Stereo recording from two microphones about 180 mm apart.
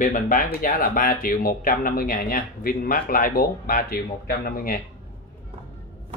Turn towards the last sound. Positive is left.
turn(degrees=55)  # may be behind; listen again after turning